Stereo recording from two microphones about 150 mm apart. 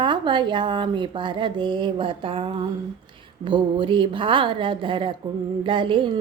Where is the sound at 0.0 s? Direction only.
30° right (ahead or behind).